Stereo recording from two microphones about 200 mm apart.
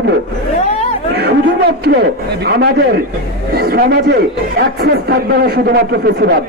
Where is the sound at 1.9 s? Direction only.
60° right (ahead or behind).